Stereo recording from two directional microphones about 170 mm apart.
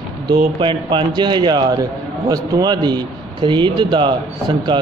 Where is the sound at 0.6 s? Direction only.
30° right (ahead or behind).